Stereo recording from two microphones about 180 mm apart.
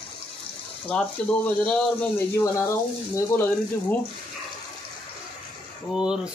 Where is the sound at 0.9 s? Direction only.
5° left (ahead or behind).